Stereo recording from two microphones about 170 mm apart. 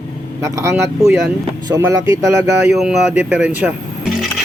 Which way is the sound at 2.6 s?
5° right (ahead or behind).